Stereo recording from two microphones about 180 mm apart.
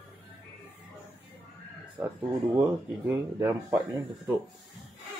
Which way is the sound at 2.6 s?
15° right (ahead or behind).